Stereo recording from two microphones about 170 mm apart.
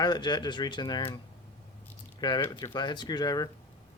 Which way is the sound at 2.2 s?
25° left (ahead or behind).